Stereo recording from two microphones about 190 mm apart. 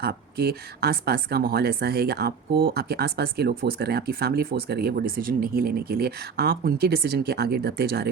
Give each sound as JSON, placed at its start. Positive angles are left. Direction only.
{"t": 0.0, "sound": "speech", "side_deg": -55}